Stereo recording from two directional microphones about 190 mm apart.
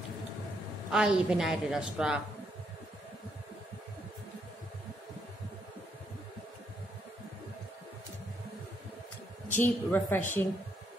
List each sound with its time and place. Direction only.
0.9 s a woman's voice: 5° right (ahead or behind)
9.5 s a woman's voice: 10° left (ahead or behind)